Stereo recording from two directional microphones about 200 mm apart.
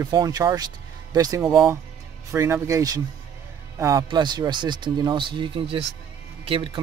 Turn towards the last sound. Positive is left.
turn(degrees=-25)  # may be behind; listen again after turning